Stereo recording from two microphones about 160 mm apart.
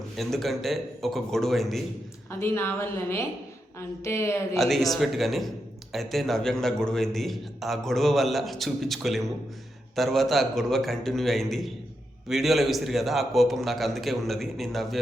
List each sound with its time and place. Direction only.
0.2 s a man's voice: centre (ahead or behind)
2.4 s a woman's voice: 15° left (ahead or behind)
4.5 s a man's voice: centre (ahead or behind)